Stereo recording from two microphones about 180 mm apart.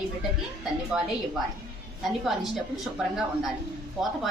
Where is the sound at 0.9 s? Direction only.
5° right (ahead or behind).